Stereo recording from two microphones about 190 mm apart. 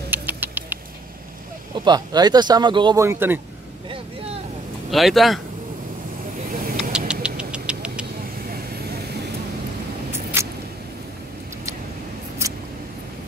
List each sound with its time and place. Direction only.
0.1 s rodents: 10° right (ahead or behind)
1.9 s speech: 20° right (ahead or behind)
3.0 s speech: 10° right (ahead or behind)
4.9 s speech: centre (ahead or behind)
6.5 s vehicle: 45° right (ahead or behind)
7.1 s a sound: 5° right (ahead or behind)
10.4 s a sound: 15° right (ahead or behind)